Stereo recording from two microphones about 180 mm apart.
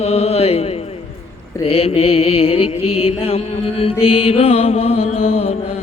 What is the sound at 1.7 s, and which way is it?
Mantra, 30° left (ahead or behind).